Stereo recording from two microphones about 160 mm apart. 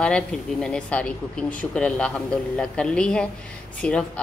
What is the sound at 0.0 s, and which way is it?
A woman's voice, 5° left (ahead or behind).